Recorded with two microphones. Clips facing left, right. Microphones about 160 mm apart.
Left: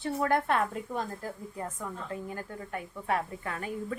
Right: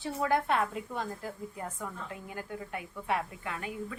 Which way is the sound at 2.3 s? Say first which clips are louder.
Left 1 dB; 40° left (ahead or behind).